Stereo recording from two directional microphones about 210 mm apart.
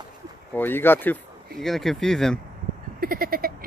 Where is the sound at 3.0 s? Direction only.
45° right (ahead or behind).